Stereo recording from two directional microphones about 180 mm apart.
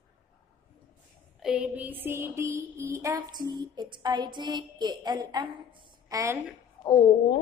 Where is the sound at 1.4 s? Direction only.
5° right (ahead or behind).